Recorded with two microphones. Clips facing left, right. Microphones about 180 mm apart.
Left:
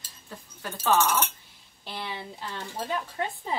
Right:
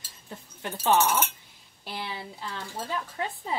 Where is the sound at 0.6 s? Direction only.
20° right (ahead or behind).